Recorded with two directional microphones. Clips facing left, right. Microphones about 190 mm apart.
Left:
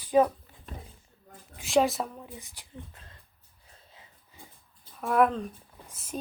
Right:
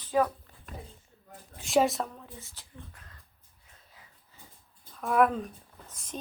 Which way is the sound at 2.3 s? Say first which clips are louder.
Left 3 dB; 15° left (ahead or behind).